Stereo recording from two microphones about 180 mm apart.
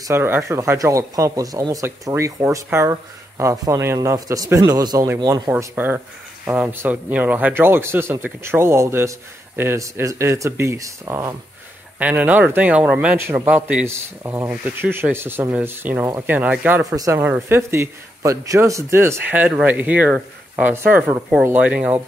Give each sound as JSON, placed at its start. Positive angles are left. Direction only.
{"t": 0.0, "sound": "speech", "side_deg": -15}